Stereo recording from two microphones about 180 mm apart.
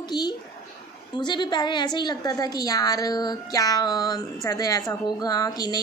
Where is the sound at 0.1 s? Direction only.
25° left (ahead or behind).